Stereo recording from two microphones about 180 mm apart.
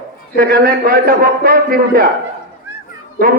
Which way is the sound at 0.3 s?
55° right (ahead or behind).